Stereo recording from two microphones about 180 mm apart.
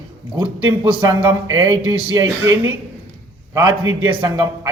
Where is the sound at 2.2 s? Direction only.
90° right.